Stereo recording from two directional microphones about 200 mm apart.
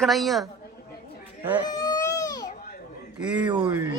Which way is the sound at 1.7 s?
20° left (ahead or behind).